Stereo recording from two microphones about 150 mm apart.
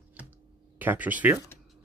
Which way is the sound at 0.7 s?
10° right (ahead or behind).